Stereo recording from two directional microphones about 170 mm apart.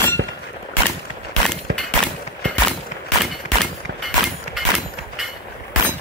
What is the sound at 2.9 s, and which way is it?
Fusillade, 45° left (ahead or behind).